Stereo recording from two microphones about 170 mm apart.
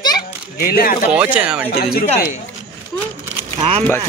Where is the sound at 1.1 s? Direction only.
10° right (ahead or behind).